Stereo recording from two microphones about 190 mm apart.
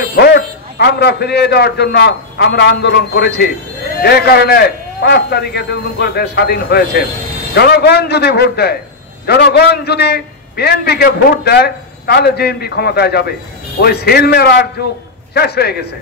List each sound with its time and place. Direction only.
0.1 s a man's voice: 60° left (ahead or behind)